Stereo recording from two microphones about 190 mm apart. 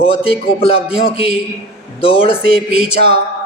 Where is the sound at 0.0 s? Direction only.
30° left (ahead or behind).